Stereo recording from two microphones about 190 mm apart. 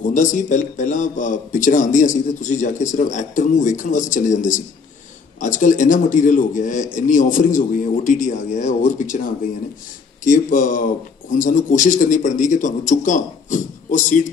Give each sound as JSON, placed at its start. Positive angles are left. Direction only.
{"t": 0.0, "sound": "a man's voice", "side_deg": 40}
{"t": 10.2, "sound": "a man's voice", "side_deg": 40}